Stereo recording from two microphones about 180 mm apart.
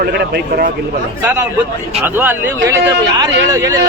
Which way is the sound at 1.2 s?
10° right (ahead or behind).